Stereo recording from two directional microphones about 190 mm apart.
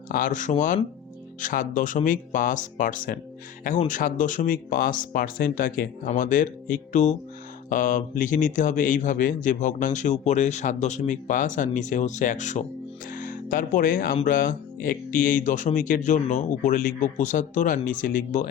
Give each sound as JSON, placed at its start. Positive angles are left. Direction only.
{"t": 0.1, "sound": "speech", "side_deg": 45}